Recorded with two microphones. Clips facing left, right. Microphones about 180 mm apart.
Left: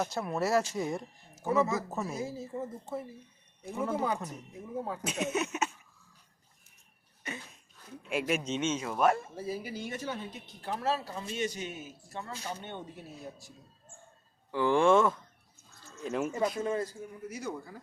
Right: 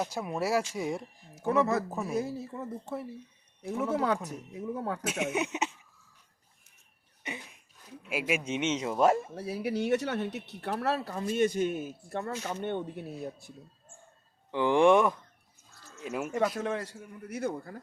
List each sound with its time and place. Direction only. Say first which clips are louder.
0.0 s speech: even; 10° right (ahead or behind)
1.4 s speech: right 2 dB; 60° right (ahead or behind)
1.9 s speech: right 1 dB; 10° right (ahead or behind)
2.1 s speech: right 3 dB; 60° right (ahead or behind)
5.0 s speech: right 1 dB; 10° right (ahead or behind)
7.3 s a sound: right 1 dB; 15° right (ahead or behind)
8.0 s speech: even; 5° right (ahead or behind)
8.4 s speech: right 2 dB; 15° right (ahead or behind)
9.3 s speech: right 4 dB; 70° right (ahead or behind)
14.5 s speech: right 2 dB; 15° right (ahead or behind)
16.0 s speech: left 2 dB; 5° right (ahead or behind)
16.6 s speech: left 1 dB; 75° right (ahead or behind); by 17.7 s 60° right (ahead or behind)